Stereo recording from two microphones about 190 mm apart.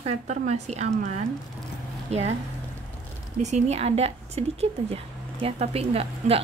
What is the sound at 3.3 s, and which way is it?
Speech, 35° right (ahead or behind).